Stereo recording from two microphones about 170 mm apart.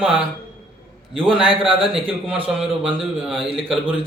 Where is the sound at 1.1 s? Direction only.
30° right (ahead or behind).